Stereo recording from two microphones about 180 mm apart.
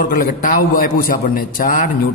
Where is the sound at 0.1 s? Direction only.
50° left (ahead or behind).